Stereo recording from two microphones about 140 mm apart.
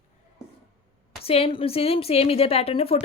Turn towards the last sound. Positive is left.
turn(degrees=45)  # may be behind; listen again after turning